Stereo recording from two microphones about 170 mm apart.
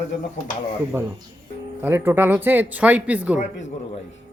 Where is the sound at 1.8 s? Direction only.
15° right (ahead or behind).